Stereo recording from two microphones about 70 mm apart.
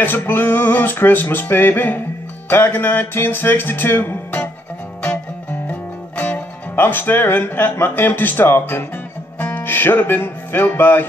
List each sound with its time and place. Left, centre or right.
0.0 s music: left
5.5 s speech: left
9.4 s music: left